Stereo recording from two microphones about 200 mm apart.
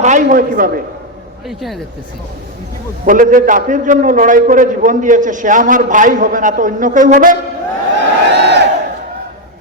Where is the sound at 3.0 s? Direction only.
40° right (ahead or behind).